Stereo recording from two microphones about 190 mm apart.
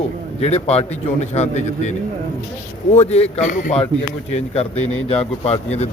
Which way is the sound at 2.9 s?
35° left (ahead or behind).